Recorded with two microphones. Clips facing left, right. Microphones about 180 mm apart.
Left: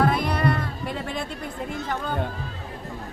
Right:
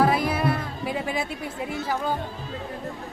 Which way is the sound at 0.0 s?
5° right (ahead or behind).